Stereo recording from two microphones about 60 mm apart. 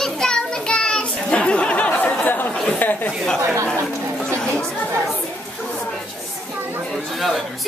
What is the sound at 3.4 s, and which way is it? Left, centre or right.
Chatter, right.